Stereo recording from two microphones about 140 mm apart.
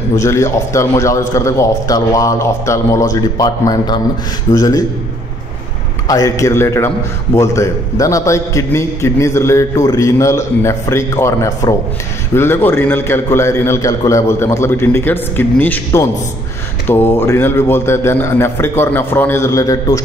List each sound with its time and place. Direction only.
0.1 s a man's voice: 20° left (ahead or behind)
6.0 s a man's voice: 25° left (ahead or behind)